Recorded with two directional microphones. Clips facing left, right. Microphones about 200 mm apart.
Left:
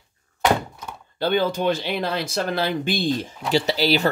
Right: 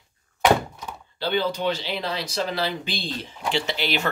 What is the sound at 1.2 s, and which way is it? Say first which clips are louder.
Speech: left 3 dB; 50° left (ahead or behind).